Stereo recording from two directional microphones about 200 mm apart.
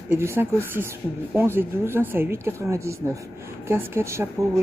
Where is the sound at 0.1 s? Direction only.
10° right (ahead or behind).